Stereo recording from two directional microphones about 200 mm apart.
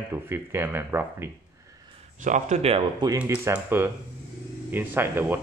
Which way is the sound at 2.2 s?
35° right (ahead or behind).